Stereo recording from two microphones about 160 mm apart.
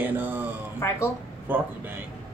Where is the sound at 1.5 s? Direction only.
10° right (ahead or behind).